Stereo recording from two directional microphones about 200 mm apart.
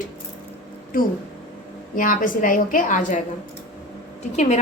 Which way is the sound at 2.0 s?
40° left (ahead or behind).